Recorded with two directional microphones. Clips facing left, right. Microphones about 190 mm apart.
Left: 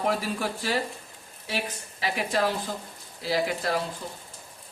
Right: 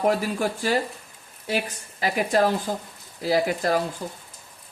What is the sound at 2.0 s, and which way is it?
Speech, 45° right (ahead or behind).